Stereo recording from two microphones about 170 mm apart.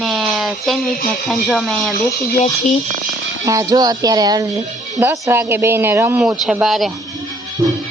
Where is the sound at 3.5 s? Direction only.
20° right (ahead or behind); by 6.9 s centre (ahead or behind).